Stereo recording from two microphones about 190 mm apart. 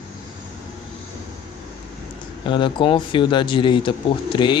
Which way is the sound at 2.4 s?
25° left (ahead or behind).